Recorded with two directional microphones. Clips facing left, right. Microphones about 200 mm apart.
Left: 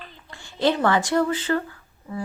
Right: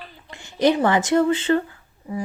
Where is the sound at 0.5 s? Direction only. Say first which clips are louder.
Right 3 dB; 15° right (ahead or behind).